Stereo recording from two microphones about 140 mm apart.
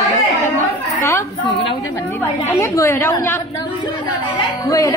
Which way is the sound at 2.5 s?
20° left (ahead or behind).